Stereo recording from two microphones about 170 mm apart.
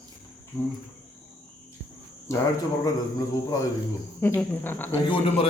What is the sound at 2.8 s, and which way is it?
Speech, 20° left (ahead or behind).